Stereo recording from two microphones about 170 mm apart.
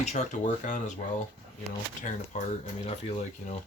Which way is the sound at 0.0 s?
40° left (ahead or behind).